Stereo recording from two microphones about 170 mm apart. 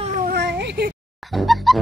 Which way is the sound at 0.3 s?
75° right (ahead or behind).